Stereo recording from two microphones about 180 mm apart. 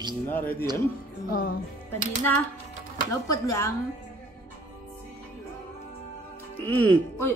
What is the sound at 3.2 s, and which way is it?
Speech, 15° left (ahead or behind).